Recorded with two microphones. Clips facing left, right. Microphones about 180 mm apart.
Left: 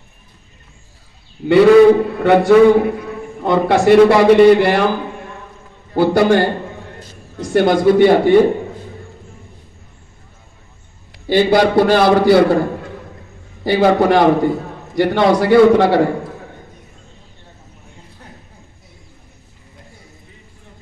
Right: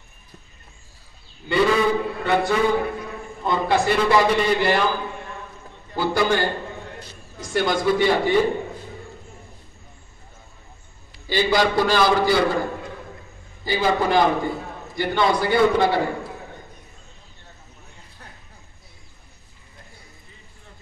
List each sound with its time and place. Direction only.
1.4 s a man's voice: 75° left (ahead or behind)
5.9 s a man's voice: 65° left (ahead or behind)
11.1 s a man's voice: 60° left (ahead or behind)
13.7 s a man's voice: 70° left (ahead or behind)